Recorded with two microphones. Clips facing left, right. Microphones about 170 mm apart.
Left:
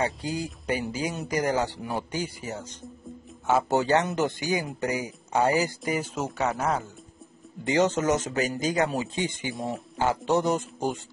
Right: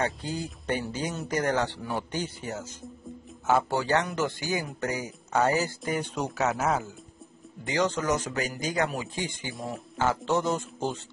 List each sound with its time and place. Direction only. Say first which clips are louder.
0.0 s speech: left 2 dB; 10° left (ahead or behind)
3.7 s speech: left 3 dB; 20° left (ahead or behind); by 6.9 s centre (ahead or behind)
7.6 s speech: left 4 dB; 20° left (ahead or behind)
9.5 s speech: left 4 dB; centre (ahead or behind)
9.9 s speech: left 2 dB; 15° left (ahead or behind)